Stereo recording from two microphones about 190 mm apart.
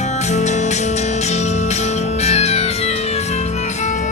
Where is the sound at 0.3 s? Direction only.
40° left (ahead or behind).